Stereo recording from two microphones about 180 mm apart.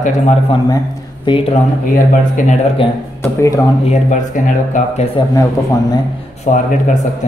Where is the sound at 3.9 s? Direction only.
45° left (ahead or behind).